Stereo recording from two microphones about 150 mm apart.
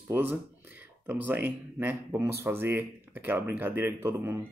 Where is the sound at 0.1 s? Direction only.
15° right (ahead or behind).